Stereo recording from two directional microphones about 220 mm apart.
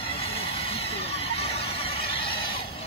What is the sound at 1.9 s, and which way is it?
Neigh, 25° left (ahead or behind).